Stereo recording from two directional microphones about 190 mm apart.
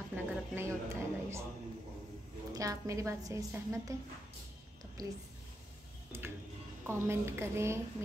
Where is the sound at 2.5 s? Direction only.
20° right (ahead or behind).